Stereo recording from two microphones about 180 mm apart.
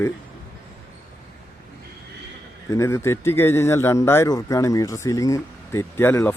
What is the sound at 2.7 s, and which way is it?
Speech, 15° left (ahead or behind).